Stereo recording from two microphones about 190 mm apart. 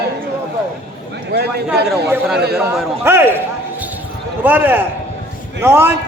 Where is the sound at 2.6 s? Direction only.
10° right (ahead or behind).